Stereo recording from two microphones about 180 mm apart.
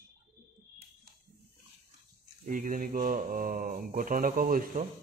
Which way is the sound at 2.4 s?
50° right (ahead or behind).